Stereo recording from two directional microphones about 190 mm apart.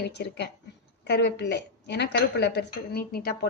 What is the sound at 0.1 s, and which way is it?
A woman's voice, 60° left (ahead or behind).